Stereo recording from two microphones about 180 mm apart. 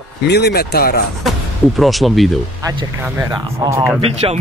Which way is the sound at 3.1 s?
20° right (ahead or behind).